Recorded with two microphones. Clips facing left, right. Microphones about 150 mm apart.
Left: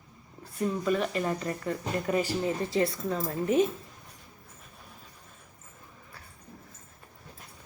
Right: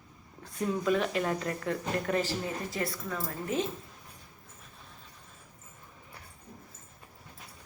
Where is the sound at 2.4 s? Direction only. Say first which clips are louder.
Left 7 dB; 25° left (ahead or behind).